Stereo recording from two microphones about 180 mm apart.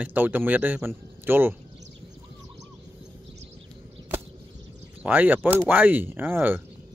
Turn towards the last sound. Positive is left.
turn(degrees=-10)  # may be behind; listen again after turning